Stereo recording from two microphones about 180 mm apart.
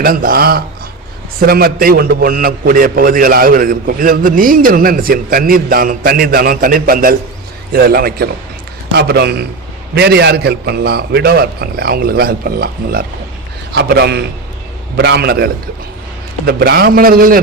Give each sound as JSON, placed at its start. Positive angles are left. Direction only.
{"t": 0.0, "sound": "a man's voice", "side_deg": -55}